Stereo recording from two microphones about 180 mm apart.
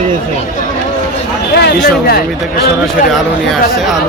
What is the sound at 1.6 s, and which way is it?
Speech, 65° left (ahead or behind).